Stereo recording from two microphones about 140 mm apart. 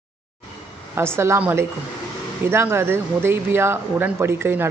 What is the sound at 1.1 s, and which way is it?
A man's voice, 20° right (ahead or behind).